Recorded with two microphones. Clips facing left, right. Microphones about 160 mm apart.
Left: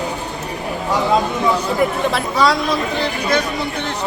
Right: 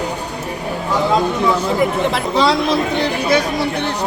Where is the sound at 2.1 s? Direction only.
25° right (ahead or behind).